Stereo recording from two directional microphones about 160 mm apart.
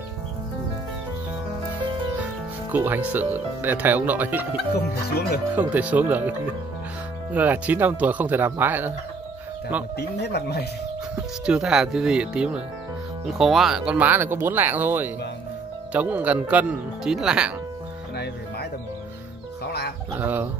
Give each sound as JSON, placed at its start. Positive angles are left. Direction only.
{"t": 2.7, "sound": "speech", "side_deg": -10}
{"t": 4.7, "sound": "speech", "side_deg": 85}
{"t": 5.6, "sound": "speech", "side_deg": -10}
{"t": 7.3, "sound": "speech", "side_deg": -10}
{"t": 9.9, "sound": "speech", "side_deg": 90}
{"t": 11.4, "sound": "speech", "side_deg": -5}
{"t": 18.1, "sound": "music", "side_deg": 90}
{"t": 20.1, "sound": "speech", "side_deg": -10}